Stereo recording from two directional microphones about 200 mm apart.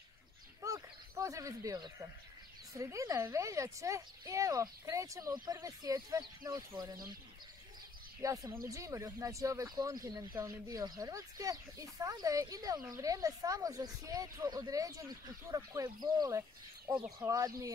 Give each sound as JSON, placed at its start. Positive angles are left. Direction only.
{"t": 0.6, "sound": "a sound", "side_deg": -15}
{"t": 2.7, "sound": "speech", "side_deg": -15}
{"t": 8.2, "sound": "speech", "side_deg": -15}